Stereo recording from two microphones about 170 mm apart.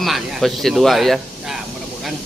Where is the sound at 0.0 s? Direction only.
Centre (ahead or behind).